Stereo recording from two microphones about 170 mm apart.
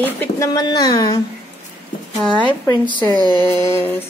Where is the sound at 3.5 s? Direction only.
15° left (ahead or behind).